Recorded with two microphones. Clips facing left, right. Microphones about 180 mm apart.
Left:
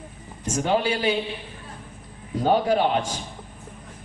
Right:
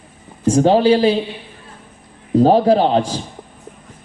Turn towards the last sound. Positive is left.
turn(degrees=-35)  # may be behind; listen again after turning